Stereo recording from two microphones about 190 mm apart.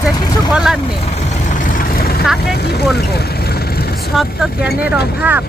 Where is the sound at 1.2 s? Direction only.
40° left (ahead or behind).